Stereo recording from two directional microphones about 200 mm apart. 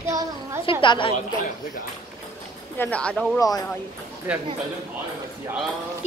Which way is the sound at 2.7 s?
10° left (ahead or behind).